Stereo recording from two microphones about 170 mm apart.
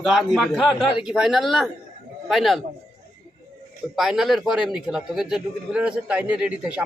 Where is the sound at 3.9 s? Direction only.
Centre (ahead or behind).